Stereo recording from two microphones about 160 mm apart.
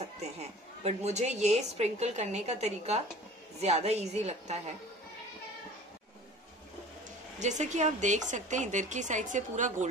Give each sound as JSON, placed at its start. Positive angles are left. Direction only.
{"t": 0.0, "sound": "a woman's voice", "side_deg": -40}
{"t": 7.3, "sound": "a woman's voice", "side_deg": -45}